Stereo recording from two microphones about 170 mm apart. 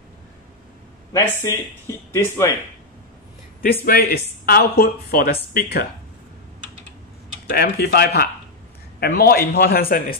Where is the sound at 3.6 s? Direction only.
60° left (ahead or behind).